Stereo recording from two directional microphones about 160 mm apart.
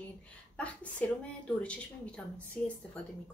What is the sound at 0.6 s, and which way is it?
Speech, 10° left (ahead or behind).